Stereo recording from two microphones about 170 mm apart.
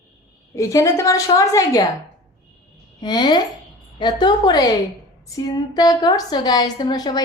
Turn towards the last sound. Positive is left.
turn(degrees=25)  # may be behind; listen again after turning